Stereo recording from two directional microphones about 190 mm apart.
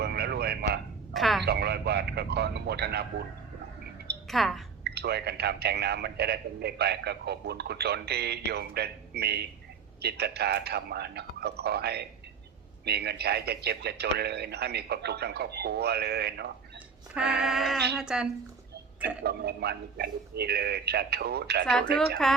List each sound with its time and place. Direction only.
0.0 s a sound: 60° right (ahead or behind)
1.1 s a sound: centre (ahead or behind)
1.5 s speech: 55° right (ahead or behind)
4.3 s speech: centre (ahead or behind)
4.8 s speech: 60° right (ahead or behind)
17.4 s speech: centre (ahead or behind)
19.2 s speech: 60° right (ahead or behind)
21.7 s speech: 5° left (ahead or behind)